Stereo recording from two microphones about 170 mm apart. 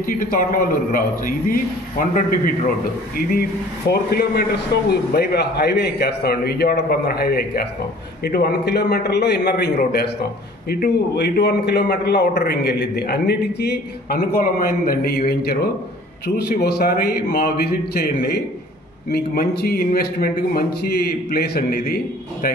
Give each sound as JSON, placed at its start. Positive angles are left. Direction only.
{"t": 0.0, "sound": "a man's voice", "side_deg": 55}
{"t": 3.2, "sound": "a man's voice", "side_deg": 65}
{"t": 14.3, "sound": "a man's voice", "side_deg": 60}